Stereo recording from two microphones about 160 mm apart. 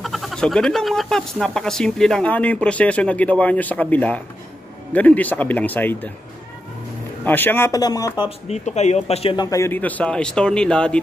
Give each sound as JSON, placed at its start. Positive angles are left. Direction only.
{"t": 0.0, "sound": "speech", "side_deg": 0}
{"t": 7.2, "sound": "speech", "side_deg": 10}
{"t": 8.5, "sound": "speech", "side_deg": 45}
{"t": 9.5, "sound": "speech", "side_deg": 15}